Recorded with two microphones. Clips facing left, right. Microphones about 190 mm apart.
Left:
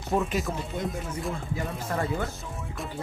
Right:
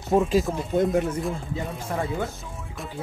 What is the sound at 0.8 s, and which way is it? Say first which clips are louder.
Speech: right 11 dB; 50° right (ahead or behind).